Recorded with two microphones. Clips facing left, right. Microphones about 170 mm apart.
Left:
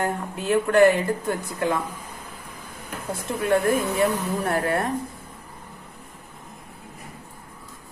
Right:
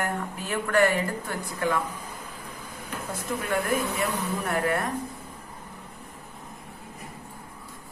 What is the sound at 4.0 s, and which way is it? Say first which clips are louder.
Speech: left 6 dB; 30° left (ahead or behind).